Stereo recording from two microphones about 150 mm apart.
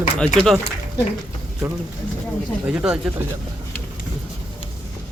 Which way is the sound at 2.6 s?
5° right (ahead or behind).